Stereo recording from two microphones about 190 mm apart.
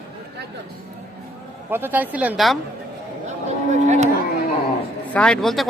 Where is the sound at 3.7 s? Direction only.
40° right (ahead or behind).